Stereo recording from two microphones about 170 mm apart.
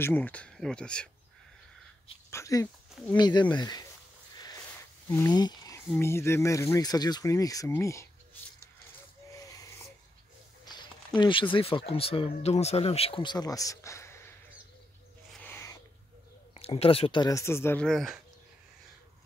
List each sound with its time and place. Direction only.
0.0 s speech: 10° left (ahead or behind)
2.3 s speech: 20° left (ahead or behind)
5.0 s speech: 10° left (ahead or behind)
5.3 s speech: 25° left (ahead or behind)
9.3 s wheeze: 20° left (ahead or behind)
10.6 s a sound: 25° left (ahead or behind)
11.1 s speech: 30° left (ahead or behind)
15.4 s a sound: 15° left (ahead or behind)
16.5 s speech: 35° left (ahead or behind); by 17.8 s 15° left (ahead or behind)
17.8 s speech: centre (ahead or behind)